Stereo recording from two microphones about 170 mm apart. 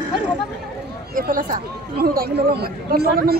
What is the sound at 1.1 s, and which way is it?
Speech, 55° right (ahead or behind).